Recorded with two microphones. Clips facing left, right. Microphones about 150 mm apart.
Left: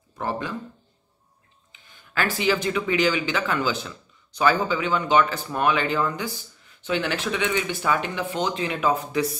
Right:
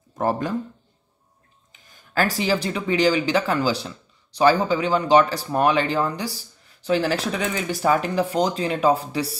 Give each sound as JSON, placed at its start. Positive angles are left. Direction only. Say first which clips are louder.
{"t": 0.2, "sound": "speech", "louder": "right 5 dB", "side_deg": -40}
{"t": 1.7, "sound": "speech", "louder": "even", "side_deg": -40}